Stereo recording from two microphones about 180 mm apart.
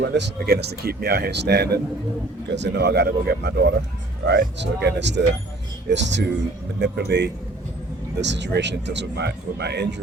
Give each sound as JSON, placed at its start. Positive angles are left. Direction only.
{"t": 0.0, "sound": "speech", "side_deg": -70}